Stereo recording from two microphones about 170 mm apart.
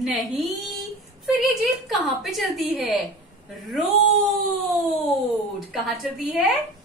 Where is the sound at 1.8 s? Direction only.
Centre (ahead or behind).